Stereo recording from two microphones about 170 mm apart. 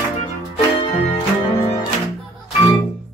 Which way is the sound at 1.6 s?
20° left (ahead or behind).